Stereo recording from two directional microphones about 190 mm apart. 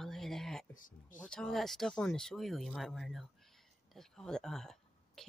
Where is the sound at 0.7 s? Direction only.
45° left (ahead or behind).